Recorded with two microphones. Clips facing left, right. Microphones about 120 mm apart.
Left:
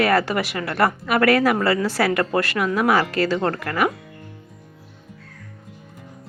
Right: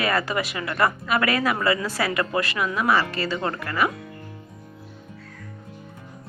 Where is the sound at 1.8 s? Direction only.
70° left (ahead or behind).